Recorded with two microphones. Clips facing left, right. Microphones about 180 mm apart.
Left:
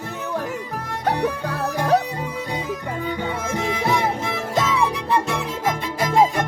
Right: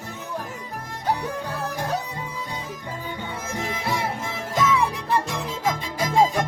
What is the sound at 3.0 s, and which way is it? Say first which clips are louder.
Music: left 7 dB; 85° left.